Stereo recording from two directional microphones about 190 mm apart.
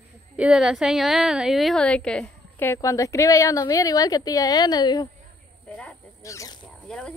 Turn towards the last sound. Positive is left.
turn(degrees=5)  # may be behind; listen again after turning